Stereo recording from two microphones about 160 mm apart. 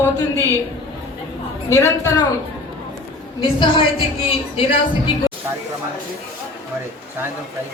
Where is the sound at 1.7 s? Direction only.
20° left (ahead or behind).